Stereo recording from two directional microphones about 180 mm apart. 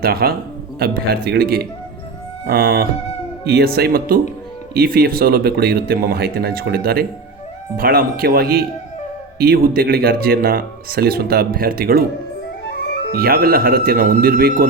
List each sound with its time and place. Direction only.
0.0 s speech: 60° right (ahead or behind)
12.6 s music: 70° left (ahead or behind)
13.1 s speech: 55° right (ahead or behind)